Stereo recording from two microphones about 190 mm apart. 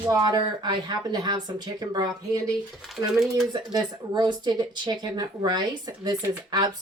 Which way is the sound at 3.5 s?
20° right (ahead or behind).